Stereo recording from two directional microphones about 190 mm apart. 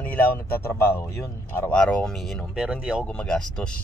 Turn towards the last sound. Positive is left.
turn(degrees=5)  # may be behind; listen again after turning